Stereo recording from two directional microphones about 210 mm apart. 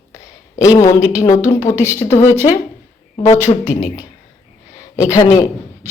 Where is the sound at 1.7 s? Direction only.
10° right (ahead or behind).